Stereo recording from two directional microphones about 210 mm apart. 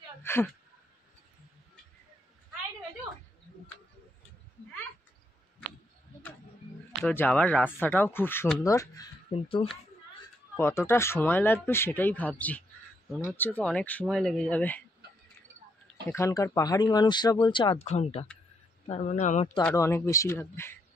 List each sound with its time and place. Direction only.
0.2 s a sound: 10° left (ahead or behind)
7.0 s speech: 5° left (ahead or behind)
9.3 s speech: 25° left (ahead or behind)
10.5 s speech: 10° left (ahead or behind)
16.1 s speech: 15° left (ahead or behind); by 19.5 s 35° left (ahead or behind)
19.6 s speech: 15° left (ahead or behind)